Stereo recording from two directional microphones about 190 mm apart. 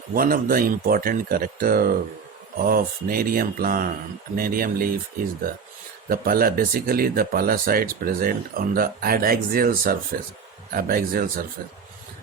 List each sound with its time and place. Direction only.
0.1 s speech: 50° right (ahead or behind)
6.1 s speech: 50° right (ahead or behind)